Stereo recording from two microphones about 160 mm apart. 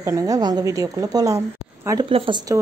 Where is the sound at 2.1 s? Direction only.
35° right (ahead or behind).